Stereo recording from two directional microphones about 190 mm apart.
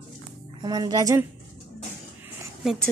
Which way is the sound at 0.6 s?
20° right (ahead or behind).